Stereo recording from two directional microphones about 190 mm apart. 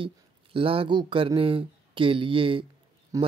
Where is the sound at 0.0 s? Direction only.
25° right (ahead or behind).